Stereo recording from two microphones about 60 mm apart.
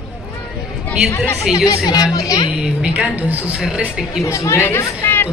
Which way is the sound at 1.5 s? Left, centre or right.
Left.